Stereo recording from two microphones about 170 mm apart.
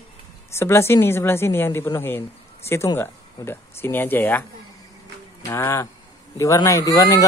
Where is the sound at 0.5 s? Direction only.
15° left (ahead or behind).